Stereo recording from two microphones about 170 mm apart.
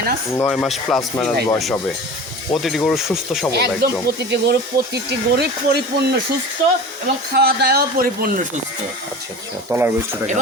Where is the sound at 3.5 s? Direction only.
75° right (ahead or behind).